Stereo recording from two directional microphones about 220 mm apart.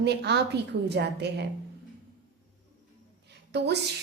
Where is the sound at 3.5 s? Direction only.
50° right (ahead or behind).